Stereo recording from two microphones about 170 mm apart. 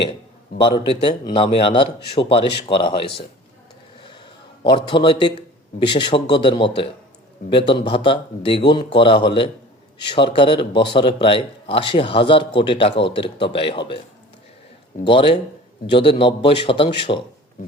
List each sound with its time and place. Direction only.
0.6 s speech: 25° left (ahead or behind)
4.0 s a sound: 30° left (ahead or behind)
5.8 s speech: 25° left (ahead or behind)
15.0 s speech: 30° left (ahead or behind)